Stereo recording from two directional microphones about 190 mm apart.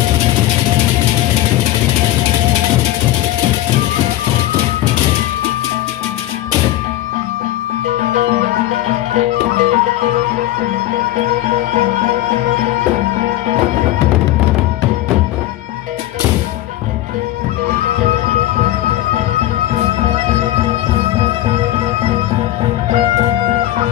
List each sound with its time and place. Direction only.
8.0 s music: 50° right (ahead or behind)